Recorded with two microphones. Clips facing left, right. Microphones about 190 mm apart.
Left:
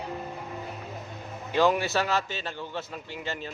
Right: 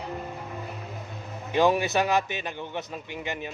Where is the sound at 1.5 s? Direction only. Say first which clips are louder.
Right 1 dB; 15° right (ahead or behind).